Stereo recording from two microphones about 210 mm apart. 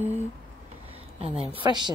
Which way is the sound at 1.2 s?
30° right (ahead or behind).